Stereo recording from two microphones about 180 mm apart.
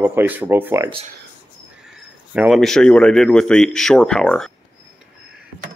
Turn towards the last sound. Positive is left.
turn(degrees=5)  # may be behind; listen again after turning